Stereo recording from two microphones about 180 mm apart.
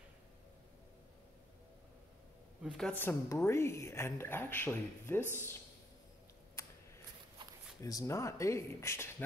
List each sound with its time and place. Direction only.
2.6 s a woman's voice: 5° left (ahead or behind)
6.6 s a sound: 15° left (ahead or behind)
7.8 s a woman's voice: 20° left (ahead or behind)